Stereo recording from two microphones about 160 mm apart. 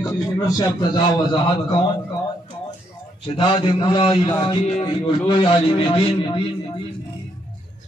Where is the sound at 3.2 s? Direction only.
30° left (ahead or behind).